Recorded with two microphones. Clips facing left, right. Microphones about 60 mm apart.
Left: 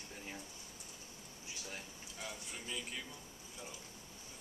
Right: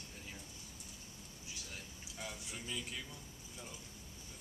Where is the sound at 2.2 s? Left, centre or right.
Centre.